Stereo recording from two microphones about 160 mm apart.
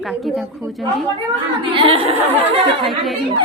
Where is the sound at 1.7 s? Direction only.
35° right (ahead or behind).